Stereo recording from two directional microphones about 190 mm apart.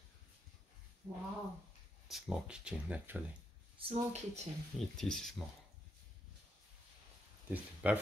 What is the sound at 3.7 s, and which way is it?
Speech, 30° right (ahead or behind).